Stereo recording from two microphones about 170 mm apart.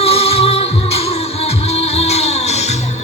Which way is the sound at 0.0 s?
35° left (ahead or behind).